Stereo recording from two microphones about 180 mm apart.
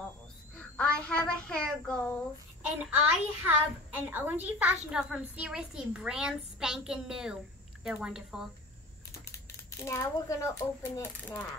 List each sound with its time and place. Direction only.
0.7 s a woman's voice: 5° left (ahead or behind)
2.8 s a woman's voice: 5° right (ahead or behind)
9.8 s speech: 15° left (ahead or behind)